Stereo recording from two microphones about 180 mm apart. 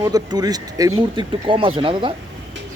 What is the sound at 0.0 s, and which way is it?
Speech, 20° right (ahead or behind).